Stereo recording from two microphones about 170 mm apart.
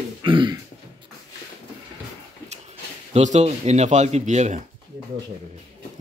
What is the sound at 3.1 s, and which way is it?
Speech, 40° right (ahead or behind).